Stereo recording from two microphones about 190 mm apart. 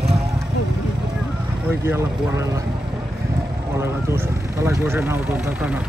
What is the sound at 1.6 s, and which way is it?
Speech, 10° right (ahead or behind).